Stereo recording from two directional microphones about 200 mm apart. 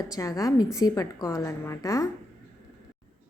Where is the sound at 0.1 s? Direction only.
15° left (ahead or behind).